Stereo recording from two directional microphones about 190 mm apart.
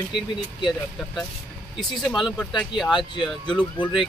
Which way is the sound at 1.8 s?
Centre (ahead or behind).